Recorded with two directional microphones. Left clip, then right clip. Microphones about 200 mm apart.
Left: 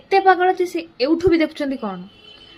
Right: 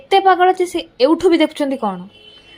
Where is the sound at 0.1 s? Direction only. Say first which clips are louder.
Right 3 dB; 15° right (ahead or behind).